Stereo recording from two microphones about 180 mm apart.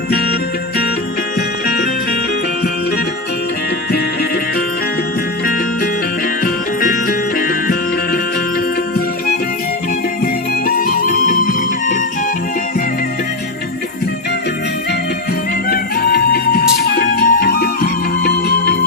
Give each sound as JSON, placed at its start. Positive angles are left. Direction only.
{"t": 1.4, "sound": "music", "side_deg": 60}
{"t": 6.4, "sound": "music", "side_deg": 50}
{"t": 10.7, "sound": "music", "side_deg": 55}
{"t": 15.7, "sound": "music", "side_deg": 55}